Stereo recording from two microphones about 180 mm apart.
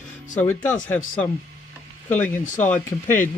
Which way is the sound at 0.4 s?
10° left (ahead or behind).